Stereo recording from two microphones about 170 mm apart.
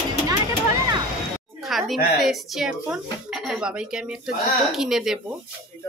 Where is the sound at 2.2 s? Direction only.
Centre (ahead or behind).